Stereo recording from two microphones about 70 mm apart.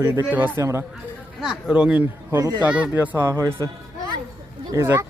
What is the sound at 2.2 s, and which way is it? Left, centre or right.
Speech, right.